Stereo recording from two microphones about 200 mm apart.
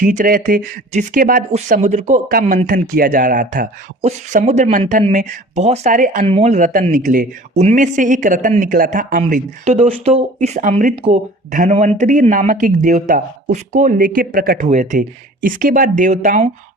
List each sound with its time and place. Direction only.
0.0 s speech: 40° right (ahead or behind)
14.7 s speech: 35° right (ahead or behind)